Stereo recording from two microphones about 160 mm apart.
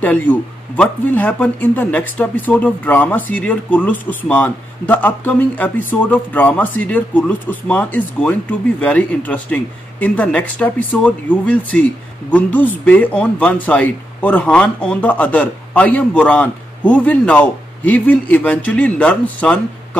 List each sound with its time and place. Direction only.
0.0 s speech: 10° left (ahead or behind)